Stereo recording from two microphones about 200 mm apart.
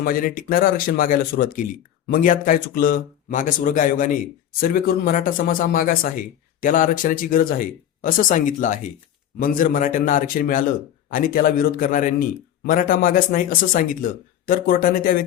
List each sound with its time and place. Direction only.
0.0 s speech: 45° left (ahead or behind)